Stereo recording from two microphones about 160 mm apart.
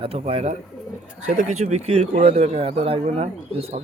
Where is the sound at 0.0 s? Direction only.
35° right (ahead or behind).